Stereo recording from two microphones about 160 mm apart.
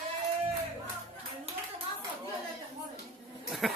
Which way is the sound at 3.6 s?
Centre (ahead or behind).